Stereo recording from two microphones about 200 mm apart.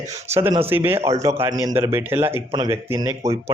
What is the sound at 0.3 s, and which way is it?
Speech, 15° right (ahead or behind).